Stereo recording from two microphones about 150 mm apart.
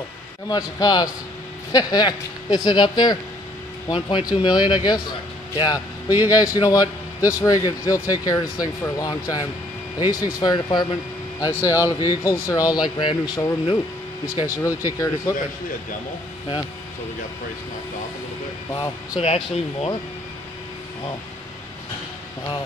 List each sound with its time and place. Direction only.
0.5 s speech: 25° left (ahead or behind)
4.4 s speech: 30° left (ahead or behind)
10.4 s speech: 30° left (ahead or behind)
19.1 s speech: 45° left (ahead or behind)